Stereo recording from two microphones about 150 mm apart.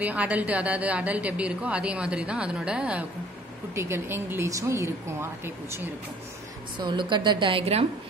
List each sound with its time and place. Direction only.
0.0 s a woman's voice: 10° right (ahead or behind)
6.8 s a woman's voice: 30° right (ahead or behind)